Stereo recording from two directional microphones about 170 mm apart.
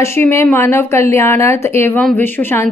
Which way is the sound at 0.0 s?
15° left (ahead or behind).